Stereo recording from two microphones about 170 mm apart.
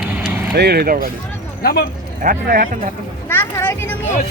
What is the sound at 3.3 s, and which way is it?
Speech, 15° left (ahead or behind).